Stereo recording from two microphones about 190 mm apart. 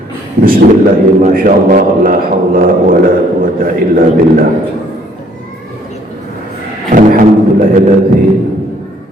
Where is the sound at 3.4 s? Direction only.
50° right (ahead or behind).